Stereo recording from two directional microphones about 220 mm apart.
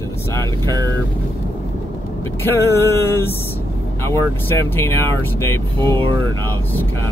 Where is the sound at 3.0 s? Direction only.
10° left (ahead or behind).